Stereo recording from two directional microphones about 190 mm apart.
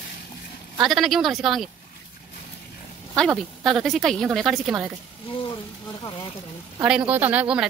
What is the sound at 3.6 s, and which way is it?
A woman's voice, centre (ahead or behind).